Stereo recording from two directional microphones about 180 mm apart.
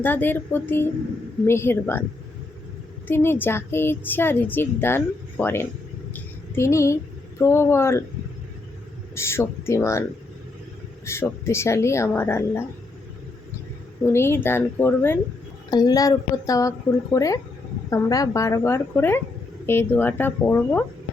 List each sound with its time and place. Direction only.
0.0 s speech: 10° left (ahead or behind)
3.1 s speech: 10° left (ahead or behind)
9.1 s speech: 15° left (ahead or behind)
11.0 s speech: 15° left (ahead or behind)
14.1 s speech: 15° left (ahead or behind)